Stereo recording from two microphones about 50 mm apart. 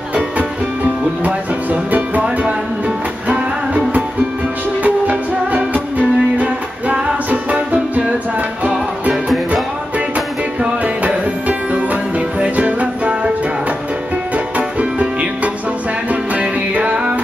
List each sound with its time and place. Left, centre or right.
1.2 s music: right
3.3 s music: right
14.3 s music: right